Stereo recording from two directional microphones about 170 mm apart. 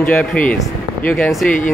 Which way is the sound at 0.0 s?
10° left (ahead or behind).